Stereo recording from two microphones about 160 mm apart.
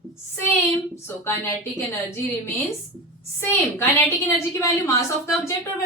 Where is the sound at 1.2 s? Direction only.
15° left (ahead or behind).